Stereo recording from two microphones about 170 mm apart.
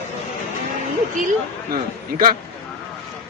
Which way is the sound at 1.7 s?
55° right (ahead or behind).